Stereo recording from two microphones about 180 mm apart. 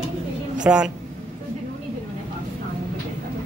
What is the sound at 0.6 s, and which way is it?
Speech, 5° right (ahead or behind).